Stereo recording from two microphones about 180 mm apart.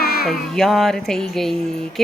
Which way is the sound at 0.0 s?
60° left (ahead or behind).